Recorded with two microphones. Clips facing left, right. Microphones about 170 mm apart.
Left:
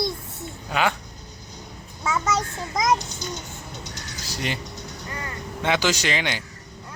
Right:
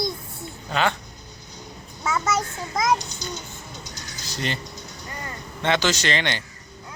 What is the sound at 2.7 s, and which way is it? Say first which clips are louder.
Speech: even; 20° left (ahead or behind).